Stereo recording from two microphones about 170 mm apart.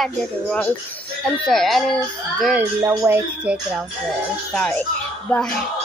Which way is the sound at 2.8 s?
20° right (ahead or behind).